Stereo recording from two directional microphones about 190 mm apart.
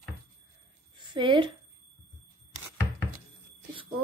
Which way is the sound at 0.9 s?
25° right (ahead or behind).